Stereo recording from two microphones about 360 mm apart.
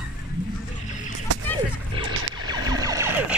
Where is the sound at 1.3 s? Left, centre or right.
Right.